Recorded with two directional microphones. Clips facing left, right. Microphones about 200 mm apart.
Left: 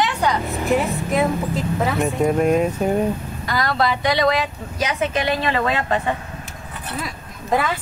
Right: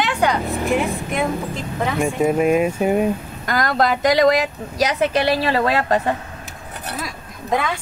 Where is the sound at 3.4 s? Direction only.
45° right (ahead or behind).